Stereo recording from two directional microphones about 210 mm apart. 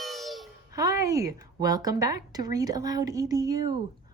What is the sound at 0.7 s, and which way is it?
A woman's voice, 15° right (ahead or behind).